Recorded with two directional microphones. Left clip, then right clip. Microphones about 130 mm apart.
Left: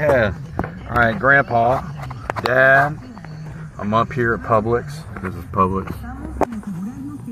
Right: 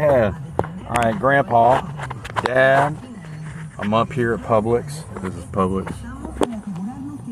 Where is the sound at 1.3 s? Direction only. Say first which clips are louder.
Left 2 dB; 40° right (ahead or behind).